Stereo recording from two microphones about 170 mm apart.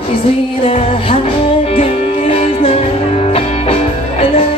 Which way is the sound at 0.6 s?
35° left (ahead or behind).